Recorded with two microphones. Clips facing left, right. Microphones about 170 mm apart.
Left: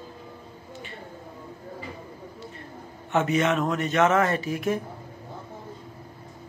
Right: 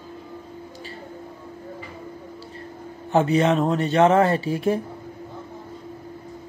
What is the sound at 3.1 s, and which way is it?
Speech, 30° right (ahead or behind).